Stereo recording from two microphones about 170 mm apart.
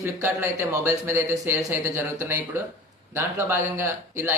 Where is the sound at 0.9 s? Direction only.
15° right (ahead or behind).